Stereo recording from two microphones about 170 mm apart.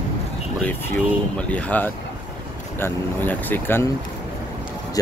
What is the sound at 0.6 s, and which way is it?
Speech, 10° left (ahead or behind).